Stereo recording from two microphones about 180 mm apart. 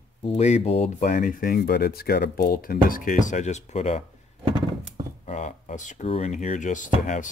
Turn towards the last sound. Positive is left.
turn(degrees=45)  # may be behind; listen again after turning